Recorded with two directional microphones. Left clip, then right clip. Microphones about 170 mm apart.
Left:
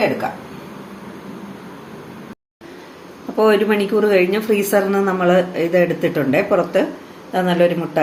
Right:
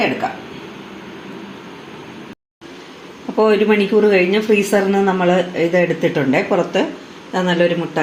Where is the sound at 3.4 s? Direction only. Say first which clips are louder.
Right 1 dB; 30° right (ahead or behind).